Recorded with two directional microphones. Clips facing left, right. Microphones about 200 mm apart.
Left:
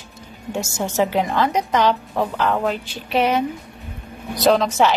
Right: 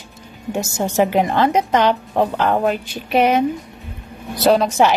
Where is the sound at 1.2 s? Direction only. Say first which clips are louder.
Right 4 dB; 55° right (ahead or behind).